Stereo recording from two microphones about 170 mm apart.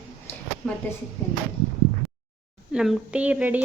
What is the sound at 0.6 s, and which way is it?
Speech, centre (ahead or behind).